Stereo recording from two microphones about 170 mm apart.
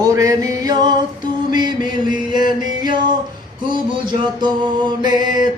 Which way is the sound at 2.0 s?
25° right (ahead or behind).